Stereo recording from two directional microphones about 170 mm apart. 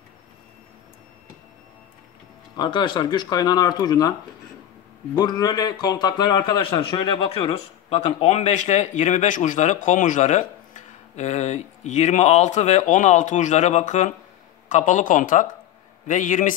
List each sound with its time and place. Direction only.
2.5 s speech: 25° left (ahead or behind)
5.1 s a man's voice: 25° left (ahead or behind); by 16.5 s 50° left (ahead or behind)